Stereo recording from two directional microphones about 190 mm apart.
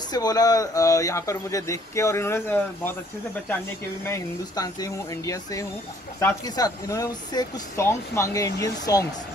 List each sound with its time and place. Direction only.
0.1 s speech: 20° left (ahead or behind)
4.0 s speech: 15° left (ahead or behind)